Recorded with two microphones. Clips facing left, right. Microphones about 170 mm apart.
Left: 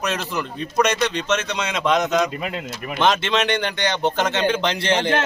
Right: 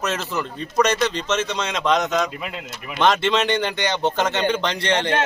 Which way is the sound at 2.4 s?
45° left (ahead or behind).